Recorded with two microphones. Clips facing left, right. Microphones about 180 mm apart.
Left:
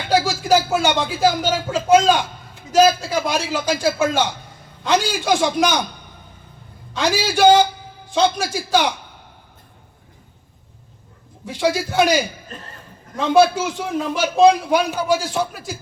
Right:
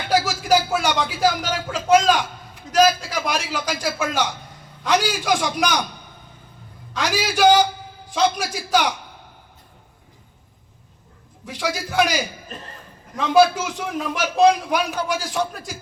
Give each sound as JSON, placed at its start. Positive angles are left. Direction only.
{"t": 0.1, "sound": "a man's voice", "side_deg": 25}
{"t": 6.9, "sound": "speech", "side_deg": 25}
{"t": 11.4, "sound": "speech", "side_deg": 25}
{"t": 13.1, "sound": "speech", "side_deg": 25}